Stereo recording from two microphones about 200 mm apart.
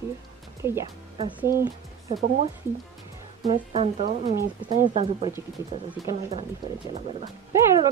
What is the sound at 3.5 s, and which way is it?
Speech, 30° right (ahead or behind).